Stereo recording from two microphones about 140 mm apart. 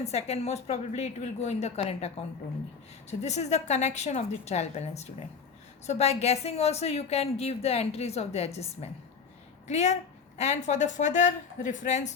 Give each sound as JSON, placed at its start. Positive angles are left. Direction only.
{"t": 0.0, "sound": "a woman's voice", "side_deg": 50}